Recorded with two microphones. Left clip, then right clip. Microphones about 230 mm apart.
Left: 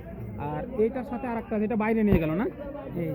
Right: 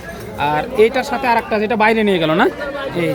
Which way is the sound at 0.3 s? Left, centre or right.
Centre.